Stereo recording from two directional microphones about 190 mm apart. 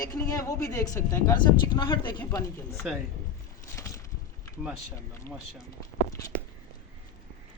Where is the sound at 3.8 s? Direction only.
15° left (ahead or behind).